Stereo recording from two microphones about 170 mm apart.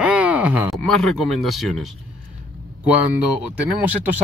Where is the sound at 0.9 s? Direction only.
Centre (ahead or behind).